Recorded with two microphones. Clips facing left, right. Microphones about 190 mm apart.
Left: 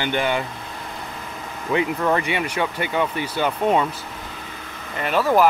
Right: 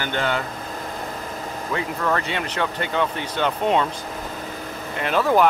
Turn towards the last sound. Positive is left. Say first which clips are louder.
# even
turn(degrees=0)  # may be behind; listen again after turning